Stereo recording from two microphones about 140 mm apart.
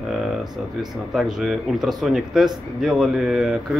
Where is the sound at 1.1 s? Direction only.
5° right (ahead or behind).